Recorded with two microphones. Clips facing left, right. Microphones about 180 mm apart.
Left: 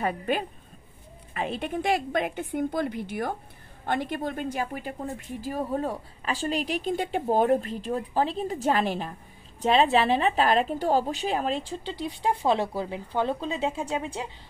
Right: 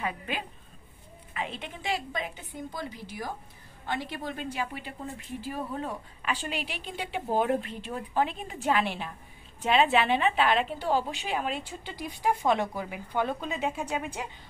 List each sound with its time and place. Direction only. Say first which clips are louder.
0.0 s a woman's voice: left 7 dB; 45° left (ahead or behind); by 14.3 s 25° left (ahead or behind)